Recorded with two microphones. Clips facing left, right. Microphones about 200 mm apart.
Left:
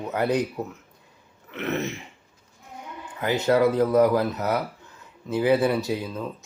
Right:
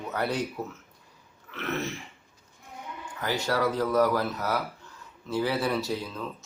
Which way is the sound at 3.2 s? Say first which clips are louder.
Left 7 dB; 20° left (ahead or behind).